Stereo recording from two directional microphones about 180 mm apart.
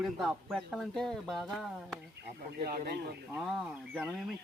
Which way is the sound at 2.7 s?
60° right (ahead or behind).